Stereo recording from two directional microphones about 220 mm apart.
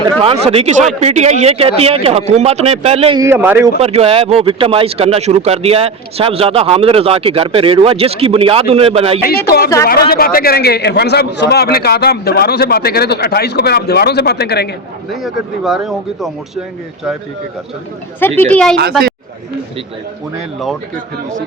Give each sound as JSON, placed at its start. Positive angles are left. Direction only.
{"t": 0.0, "sound": "speech", "side_deg": -25}
{"t": 3.2, "sound": "a man's voice", "side_deg": -10}
{"t": 3.8, "sound": "speech", "side_deg": -25}
{"t": 9.2, "sound": "a man's voice", "side_deg": 45}
{"t": 15.1, "sound": "speech", "side_deg": 0}
{"t": 18.2, "sound": "speech", "side_deg": 10}